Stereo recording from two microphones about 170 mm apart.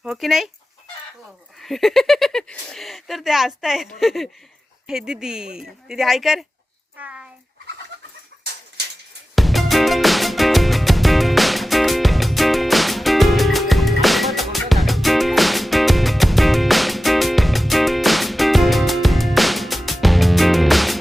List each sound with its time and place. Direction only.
0.0 s speech: centre (ahead or behind)
1.5 s speech: centre (ahead or behind)
7.0 s a sound: 5° right (ahead or behind)
9.3 s music: centre (ahead or behind)